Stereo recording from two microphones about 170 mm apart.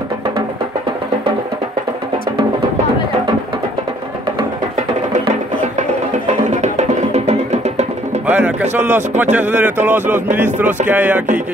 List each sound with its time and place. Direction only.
6.6 s music: 45° right (ahead or behind)
8.3 s music: 10° right (ahead or behind)
8.7 s speech: 10° right (ahead or behind)